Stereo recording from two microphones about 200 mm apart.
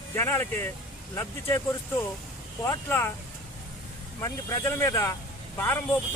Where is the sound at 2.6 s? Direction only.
15° left (ahead or behind).